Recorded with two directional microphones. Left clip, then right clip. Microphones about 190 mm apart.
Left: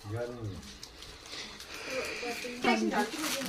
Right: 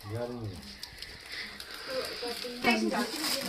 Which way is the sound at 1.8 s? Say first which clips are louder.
Even; 40° left (ahead or behind).